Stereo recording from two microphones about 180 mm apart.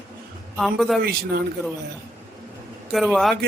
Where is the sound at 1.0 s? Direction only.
60° right (ahead or behind).